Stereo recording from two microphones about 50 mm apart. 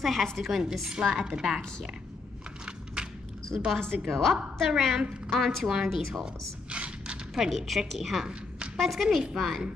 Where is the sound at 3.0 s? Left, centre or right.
Centre.